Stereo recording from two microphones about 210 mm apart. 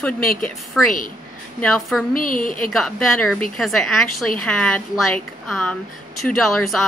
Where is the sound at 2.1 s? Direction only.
40° left (ahead or behind).